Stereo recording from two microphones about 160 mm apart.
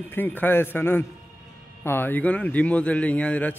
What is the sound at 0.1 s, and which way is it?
A man's voice, 10° left (ahead or behind).